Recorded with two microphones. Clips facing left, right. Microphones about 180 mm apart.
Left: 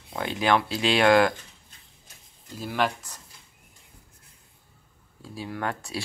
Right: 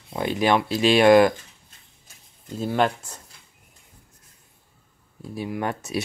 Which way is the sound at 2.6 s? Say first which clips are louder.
Right 5 dB; 25° right (ahead or behind).